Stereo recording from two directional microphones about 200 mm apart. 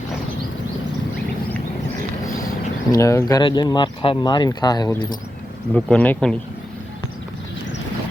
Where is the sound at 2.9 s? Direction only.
15° left (ahead or behind).